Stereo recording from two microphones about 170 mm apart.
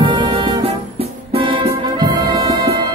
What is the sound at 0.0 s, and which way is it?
Music, 30° right (ahead or behind).